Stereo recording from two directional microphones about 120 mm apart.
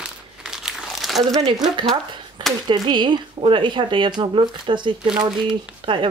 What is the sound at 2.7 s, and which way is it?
Speech, 40° right (ahead or behind).